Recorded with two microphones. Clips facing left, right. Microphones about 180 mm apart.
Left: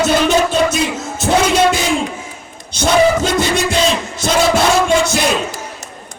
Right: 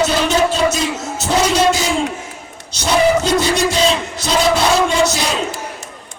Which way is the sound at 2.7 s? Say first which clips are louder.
Left 2 dB; 55° left (ahead or behind).